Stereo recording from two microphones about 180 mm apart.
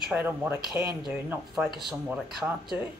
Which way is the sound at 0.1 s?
10° right (ahead or behind).